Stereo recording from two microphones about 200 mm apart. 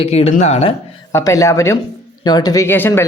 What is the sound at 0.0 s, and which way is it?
Speech, 30° left (ahead or behind).